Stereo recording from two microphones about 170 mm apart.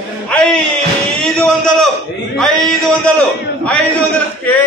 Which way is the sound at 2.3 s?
5° left (ahead or behind).